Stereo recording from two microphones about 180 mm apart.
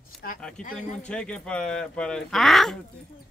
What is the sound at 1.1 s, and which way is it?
Speech, 5° left (ahead or behind).